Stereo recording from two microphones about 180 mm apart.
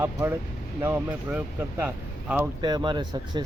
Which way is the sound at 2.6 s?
25° right (ahead or behind).